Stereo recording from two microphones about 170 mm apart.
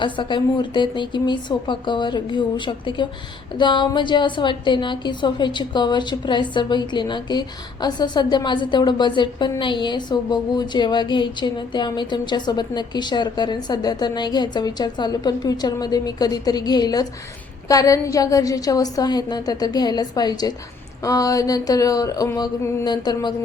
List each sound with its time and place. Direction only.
0.0 s a woman's voice: 25° left (ahead or behind)